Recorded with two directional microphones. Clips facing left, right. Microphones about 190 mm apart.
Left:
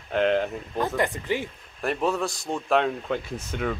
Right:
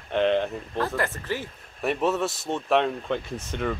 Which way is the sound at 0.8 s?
20° left (ahead or behind).